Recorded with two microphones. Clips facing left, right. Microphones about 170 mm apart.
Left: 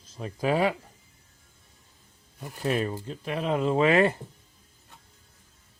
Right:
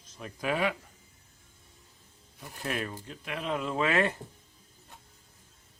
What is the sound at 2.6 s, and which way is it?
Speech, 35° left (ahead or behind).